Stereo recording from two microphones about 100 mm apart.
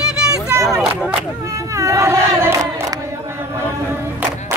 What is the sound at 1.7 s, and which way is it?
Choir, 30° right (ahead or behind).